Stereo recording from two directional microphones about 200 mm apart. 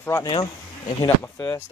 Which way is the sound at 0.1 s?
20° left (ahead or behind).